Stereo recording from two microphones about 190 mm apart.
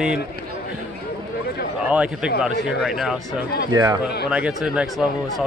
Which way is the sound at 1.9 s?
5° right (ahead or behind).